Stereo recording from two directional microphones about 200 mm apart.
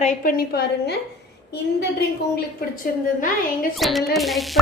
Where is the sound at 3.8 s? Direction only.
Centre (ahead or behind).